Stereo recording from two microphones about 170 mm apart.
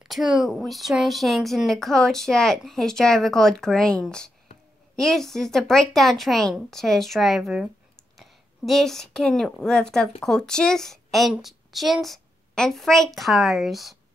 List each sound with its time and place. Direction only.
0.0 s speech: centre (ahead or behind)